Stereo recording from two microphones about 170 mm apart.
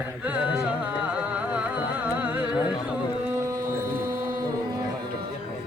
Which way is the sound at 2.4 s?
25° left (ahead or behind).